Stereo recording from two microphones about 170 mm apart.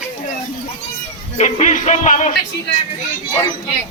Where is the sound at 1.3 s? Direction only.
45° left (ahead or behind).